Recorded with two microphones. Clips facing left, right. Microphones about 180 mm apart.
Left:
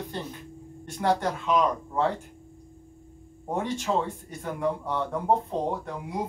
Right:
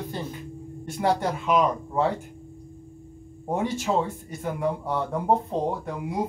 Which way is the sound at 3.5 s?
5° right (ahead or behind).